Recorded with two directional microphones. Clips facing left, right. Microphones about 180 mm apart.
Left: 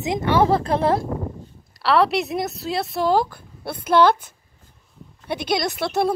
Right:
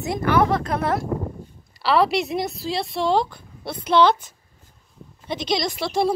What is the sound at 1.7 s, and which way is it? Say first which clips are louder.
A woman's voice: left 1 dB; centre (ahead or behind).